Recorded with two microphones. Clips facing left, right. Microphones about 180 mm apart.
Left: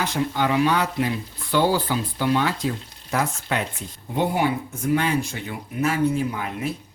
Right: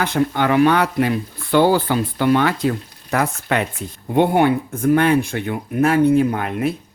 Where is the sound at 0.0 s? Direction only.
60° right (ahead or behind).